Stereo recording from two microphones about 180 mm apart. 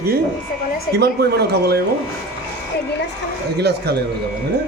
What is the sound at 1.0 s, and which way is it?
Speech, 65° right (ahead or behind).